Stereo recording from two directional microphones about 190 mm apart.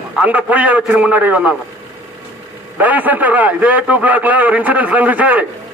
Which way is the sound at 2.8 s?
10° right (ahead or behind).